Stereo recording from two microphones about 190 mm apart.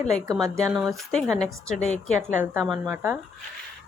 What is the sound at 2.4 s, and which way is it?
Speech, 10° right (ahead or behind).